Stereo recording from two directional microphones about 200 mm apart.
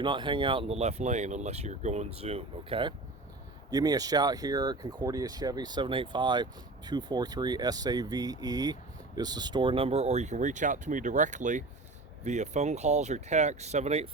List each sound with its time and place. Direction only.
0.0 s speech: 25° right (ahead or behind)